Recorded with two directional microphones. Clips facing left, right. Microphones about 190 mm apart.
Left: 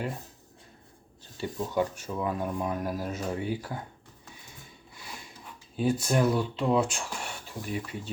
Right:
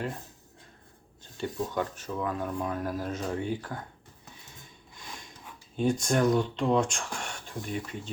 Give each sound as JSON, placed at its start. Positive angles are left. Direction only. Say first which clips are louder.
{"t": 1.4, "sound": "speech", "louder": "left 2 dB", "side_deg": 10}
{"t": 5.7, "sound": "speech", "louder": "even", "side_deg": 5}